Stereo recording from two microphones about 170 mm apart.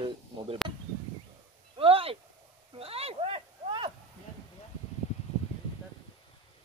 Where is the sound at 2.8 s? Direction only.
35° right (ahead or behind).